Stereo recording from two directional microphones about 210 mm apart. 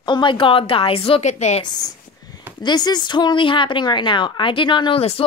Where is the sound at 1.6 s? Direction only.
20° left (ahead or behind).